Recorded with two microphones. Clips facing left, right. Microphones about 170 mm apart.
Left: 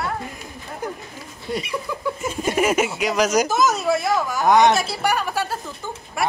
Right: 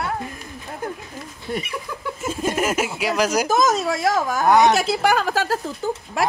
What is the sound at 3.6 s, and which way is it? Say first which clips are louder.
Speech: even; 90° right.